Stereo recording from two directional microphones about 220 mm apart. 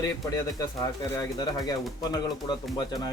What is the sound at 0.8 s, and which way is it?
Speech, 15° left (ahead or behind).